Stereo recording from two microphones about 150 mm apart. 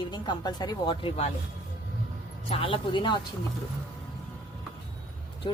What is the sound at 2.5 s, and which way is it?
Speech, 35° left (ahead or behind).